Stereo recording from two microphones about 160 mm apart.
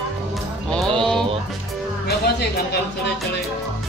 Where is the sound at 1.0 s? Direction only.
5° left (ahead or behind).